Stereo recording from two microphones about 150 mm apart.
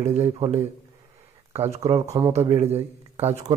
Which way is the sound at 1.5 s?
45° right (ahead or behind).